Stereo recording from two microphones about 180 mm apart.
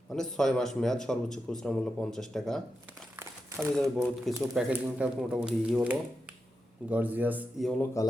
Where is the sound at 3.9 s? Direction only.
Centre (ahead or behind).